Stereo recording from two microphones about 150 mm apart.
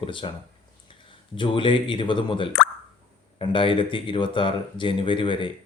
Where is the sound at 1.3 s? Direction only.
35° left (ahead or behind).